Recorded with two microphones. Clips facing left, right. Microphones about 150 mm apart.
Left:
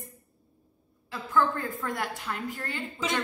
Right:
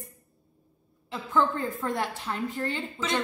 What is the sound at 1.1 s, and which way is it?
A woman's voice, 20° right (ahead or behind).